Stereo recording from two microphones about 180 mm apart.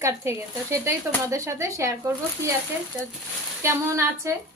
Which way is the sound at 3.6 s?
15° right (ahead or behind).